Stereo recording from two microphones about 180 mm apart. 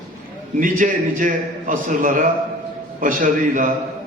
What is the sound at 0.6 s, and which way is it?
A man's voice, 45° right (ahead or behind).